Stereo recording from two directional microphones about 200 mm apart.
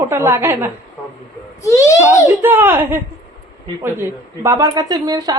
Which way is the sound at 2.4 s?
10° right (ahead or behind).